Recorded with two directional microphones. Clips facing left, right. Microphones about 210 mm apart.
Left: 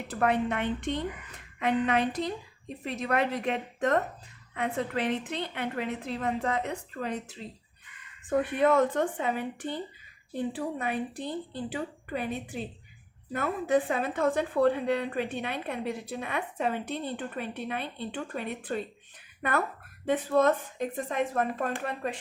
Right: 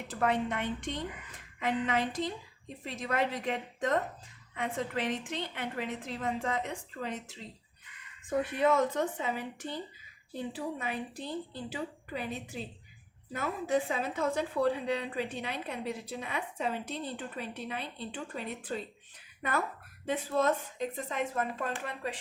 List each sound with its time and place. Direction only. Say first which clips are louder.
0.1 s a woman's voice: left 3 dB; 60° left (ahead or behind)
8.3 s a woman's voice: left 4 dB; 60° left (ahead or behind)